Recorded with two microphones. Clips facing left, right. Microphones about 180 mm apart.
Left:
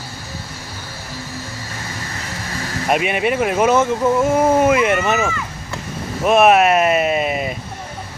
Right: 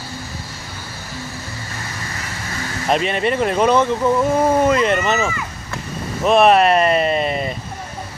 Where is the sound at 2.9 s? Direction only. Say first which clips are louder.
Even; 10° left (ahead or behind).